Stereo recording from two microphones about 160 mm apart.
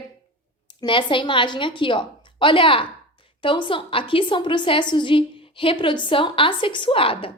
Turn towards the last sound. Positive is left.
turn(degrees=35)  # may be behind; listen again after turning